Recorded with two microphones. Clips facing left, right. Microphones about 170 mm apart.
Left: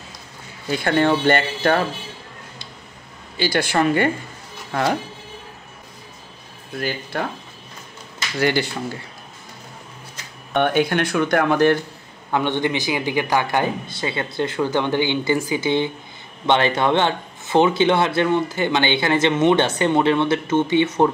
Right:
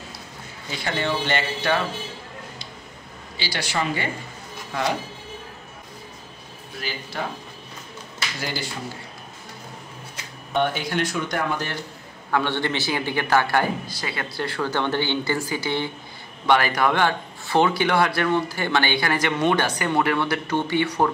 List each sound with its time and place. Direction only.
0.7 s speech: 55° left (ahead or behind)
3.3 s speech: 50° left (ahead or behind)
6.8 s speech: 55° left (ahead or behind)
8.4 s speech: 65° left (ahead or behind)
10.5 s speech: 60° left (ahead or behind)
12.3 s a man's voice: 20° left (ahead or behind)